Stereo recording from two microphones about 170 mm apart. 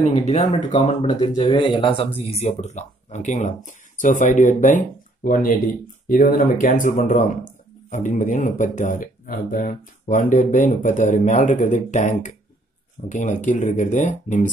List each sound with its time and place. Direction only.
0.0 s speech: 40° left (ahead or behind)